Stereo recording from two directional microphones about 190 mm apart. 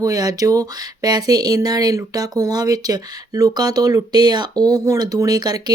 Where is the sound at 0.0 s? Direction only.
20° right (ahead or behind).